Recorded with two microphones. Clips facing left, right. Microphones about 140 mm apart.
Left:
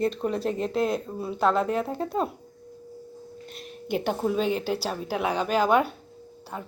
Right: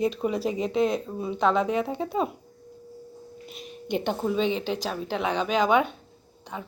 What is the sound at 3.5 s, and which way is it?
A woman's voice, centre (ahead or behind).